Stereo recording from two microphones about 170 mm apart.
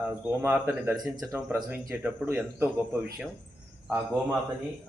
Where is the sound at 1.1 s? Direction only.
20° right (ahead or behind).